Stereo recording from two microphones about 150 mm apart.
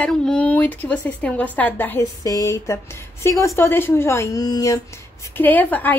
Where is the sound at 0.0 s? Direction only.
5° left (ahead or behind).